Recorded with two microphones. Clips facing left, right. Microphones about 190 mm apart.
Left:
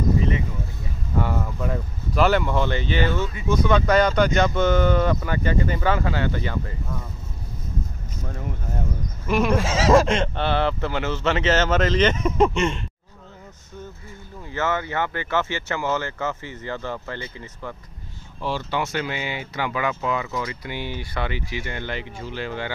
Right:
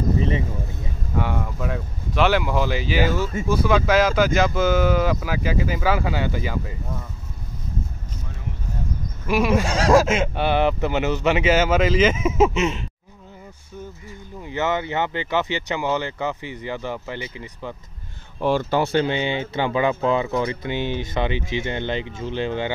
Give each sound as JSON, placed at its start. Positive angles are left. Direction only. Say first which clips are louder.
{"t": 1.1, "sound": "speech", "louder": "even", "side_deg": 0}
{"t": 9.3, "sound": "speech", "louder": "right 1 dB", "side_deg": -5}
{"t": 14.4, "sound": "speech", "louder": "right 2 dB", "side_deg": -20}
{"t": 18.4, "sound": "speech", "louder": "right 7 dB", "side_deg": -50}
{"t": 18.8, "sound": "speech", "louder": "right 6 dB", "side_deg": -30}